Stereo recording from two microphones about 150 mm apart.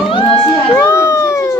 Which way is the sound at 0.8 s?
20° left (ahead or behind).